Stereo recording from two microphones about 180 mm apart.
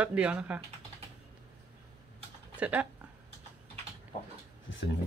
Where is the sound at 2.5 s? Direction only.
10° right (ahead or behind).